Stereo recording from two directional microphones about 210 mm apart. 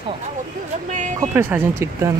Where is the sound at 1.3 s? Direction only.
10° right (ahead or behind).